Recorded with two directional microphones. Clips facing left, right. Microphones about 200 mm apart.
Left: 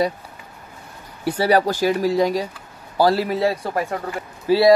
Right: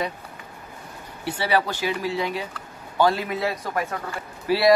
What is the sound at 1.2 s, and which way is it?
Speech, 40° left (ahead or behind).